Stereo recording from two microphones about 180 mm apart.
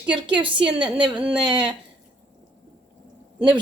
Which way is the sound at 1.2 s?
5° right (ahead or behind).